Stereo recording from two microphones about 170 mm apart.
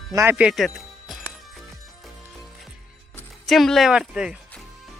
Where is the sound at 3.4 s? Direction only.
Centre (ahead or behind).